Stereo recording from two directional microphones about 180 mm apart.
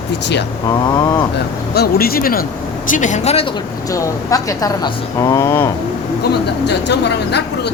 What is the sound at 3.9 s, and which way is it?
A woman's voice, 20° left (ahead or behind).